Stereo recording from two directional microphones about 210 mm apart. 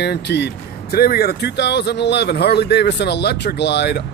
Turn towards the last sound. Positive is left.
turn(degrees=55)  # may be behind; listen again after turning